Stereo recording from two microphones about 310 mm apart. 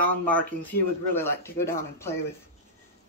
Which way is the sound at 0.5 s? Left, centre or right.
Centre.